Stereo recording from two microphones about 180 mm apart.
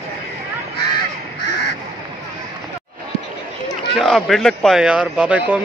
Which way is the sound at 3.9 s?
Centre (ahead or behind).